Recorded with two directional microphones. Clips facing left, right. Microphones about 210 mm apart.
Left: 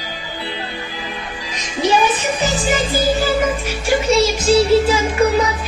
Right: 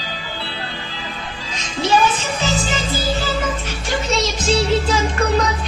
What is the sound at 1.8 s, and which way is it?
Music, 15° left (ahead or behind).